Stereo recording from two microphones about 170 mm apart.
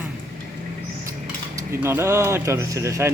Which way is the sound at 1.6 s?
15° right (ahead or behind).